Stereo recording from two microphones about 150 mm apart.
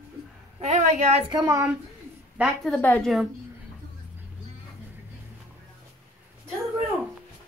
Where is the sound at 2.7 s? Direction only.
10° left (ahead or behind).